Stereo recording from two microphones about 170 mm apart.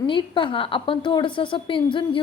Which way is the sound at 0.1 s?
30° left (ahead or behind).